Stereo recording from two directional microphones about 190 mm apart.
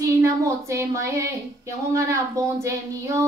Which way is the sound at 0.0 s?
15° right (ahead or behind).